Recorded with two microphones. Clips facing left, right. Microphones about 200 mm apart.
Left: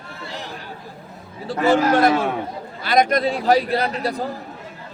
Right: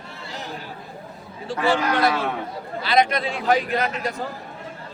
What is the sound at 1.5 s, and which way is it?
A man's voice, 40° left (ahead or behind).